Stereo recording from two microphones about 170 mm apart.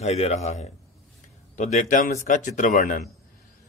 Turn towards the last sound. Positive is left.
turn(degrees=45)  # may be behind; listen again after turning